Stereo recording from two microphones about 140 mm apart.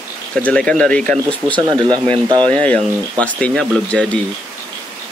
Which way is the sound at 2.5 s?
10° left (ahead or behind).